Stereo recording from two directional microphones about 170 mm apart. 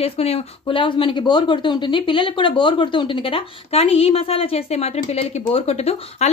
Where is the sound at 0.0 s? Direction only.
35° left (ahead or behind).